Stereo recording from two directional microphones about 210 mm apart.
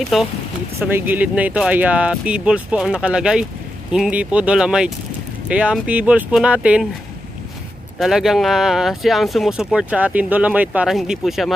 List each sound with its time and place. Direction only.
0.1 s speech: centre (ahead or behind)
8.0 s speech: centre (ahead or behind)